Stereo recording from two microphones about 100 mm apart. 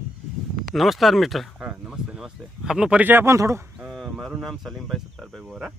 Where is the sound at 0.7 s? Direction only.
Centre (ahead or behind).